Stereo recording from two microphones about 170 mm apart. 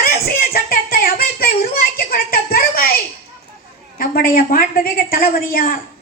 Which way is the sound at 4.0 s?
60° left (ahead or behind).